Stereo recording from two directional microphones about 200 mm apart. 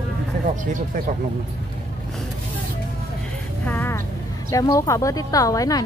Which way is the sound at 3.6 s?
10° left (ahead or behind).